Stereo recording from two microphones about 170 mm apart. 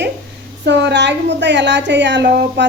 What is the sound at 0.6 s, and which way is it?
A woman's voice, 90° right.